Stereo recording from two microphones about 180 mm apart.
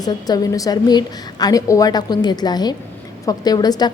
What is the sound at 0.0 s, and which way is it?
A woman's voice, 20° left (ahead or behind).